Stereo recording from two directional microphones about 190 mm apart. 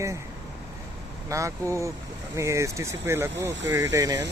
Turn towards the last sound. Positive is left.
turn(degrees=-15)  # may be behind; listen again after turning